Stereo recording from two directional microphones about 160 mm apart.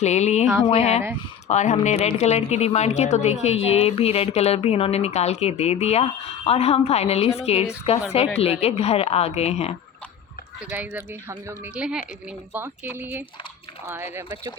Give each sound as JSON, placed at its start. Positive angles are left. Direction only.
{"t": 0.0, "sound": "a sound", "side_deg": 45}
{"t": 0.7, "sound": "speech", "side_deg": 40}
{"t": 10.7, "sound": "speech", "side_deg": -10}